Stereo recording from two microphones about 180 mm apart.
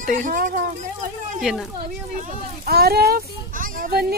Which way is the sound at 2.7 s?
60° right (ahead or behind).